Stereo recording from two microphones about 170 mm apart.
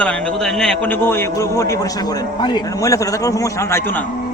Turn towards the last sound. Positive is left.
turn(degrees=20)  # may be behind; listen again after turning